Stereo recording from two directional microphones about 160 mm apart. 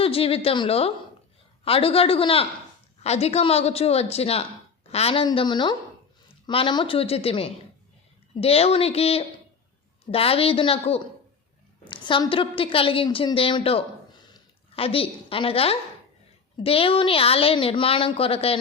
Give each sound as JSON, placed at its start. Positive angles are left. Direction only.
{"t": 0.0, "sound": "a woman's voice", "side_deg": 35}